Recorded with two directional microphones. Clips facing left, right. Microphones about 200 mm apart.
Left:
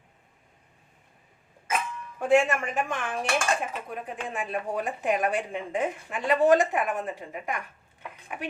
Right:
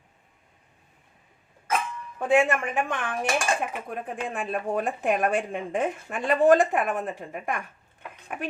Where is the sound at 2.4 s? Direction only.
55° right (ahead or behind).